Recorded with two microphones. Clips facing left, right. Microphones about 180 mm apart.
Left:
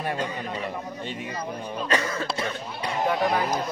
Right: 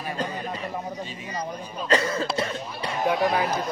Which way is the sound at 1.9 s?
30° right (ahead or behind).